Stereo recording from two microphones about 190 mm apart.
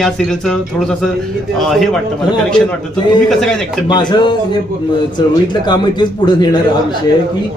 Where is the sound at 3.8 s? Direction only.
25° left (ahead or behind).